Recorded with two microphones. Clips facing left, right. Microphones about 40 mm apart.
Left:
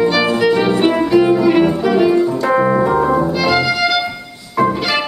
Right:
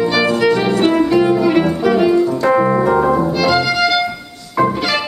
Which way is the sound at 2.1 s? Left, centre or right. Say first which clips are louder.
Even; centre.